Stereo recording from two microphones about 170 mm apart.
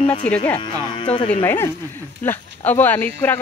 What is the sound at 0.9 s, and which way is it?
Speech, 30° left (ahead or behind).